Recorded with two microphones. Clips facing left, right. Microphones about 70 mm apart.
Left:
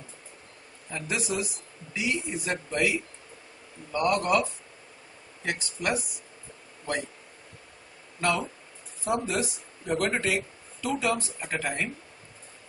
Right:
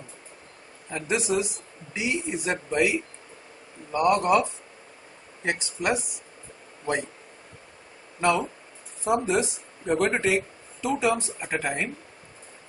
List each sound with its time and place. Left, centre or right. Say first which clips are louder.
0.8 s a man's voice: right 5 dB; centre
8.2 s a man's voice: right 4 dB; centre